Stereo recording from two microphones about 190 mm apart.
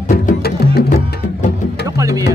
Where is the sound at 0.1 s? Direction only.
50° left (ahead or behind).